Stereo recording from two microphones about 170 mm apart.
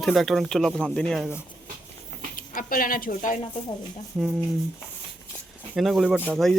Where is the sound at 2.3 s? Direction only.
55° left (ahead or behind).